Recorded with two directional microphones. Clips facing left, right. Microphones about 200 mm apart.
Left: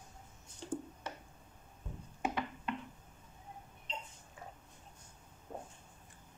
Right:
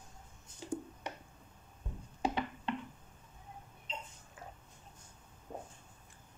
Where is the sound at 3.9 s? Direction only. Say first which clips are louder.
Even; centre (ahead or behind).